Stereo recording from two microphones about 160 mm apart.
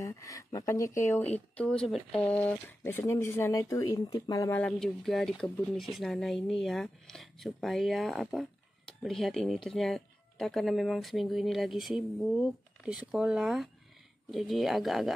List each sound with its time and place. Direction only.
0.0 s speech: 20° left (ahead or behind)
1.6 s speech: 5° left (ahead or behind)
4.6 s speech: 5° left (ahead or behind)